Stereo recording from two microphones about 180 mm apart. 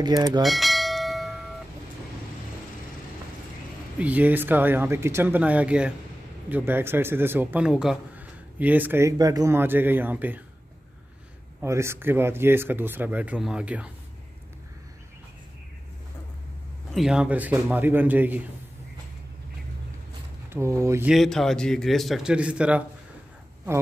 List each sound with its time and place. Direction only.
0.0 s bell: 20° right (ahead or behind)
0.4 s bell: centre (ahead or behind)
4.0 s a man's voice: 10° right (ahead or behind)
11.6 s a man's voice: 15° right (ahead or behind)
16.9 s a man's voice: 5° right (ahead or behind)
20.4 s a man's voice: 15° right (ahead or behind)
21.1 s a man's voice: centre (ahead or behind)